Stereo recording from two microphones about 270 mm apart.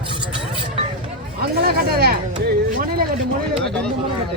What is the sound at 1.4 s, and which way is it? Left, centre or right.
Speech, right.